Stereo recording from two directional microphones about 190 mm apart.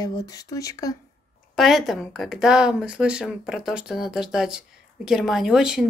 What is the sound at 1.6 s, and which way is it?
Speech, centre (ahead or behind).